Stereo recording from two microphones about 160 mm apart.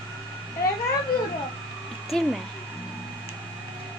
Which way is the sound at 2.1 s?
5° left (ahead or behind).